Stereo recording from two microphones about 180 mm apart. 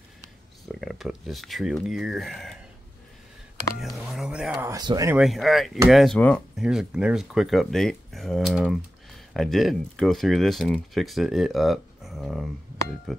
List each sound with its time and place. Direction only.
0.7 s speech: centre (ahead or behind)
3.8 s speech: centre (ahead or behind)
4.6 s speech: 20° right (ahead or behind)
5.1 s speech: centre (ahead or behind)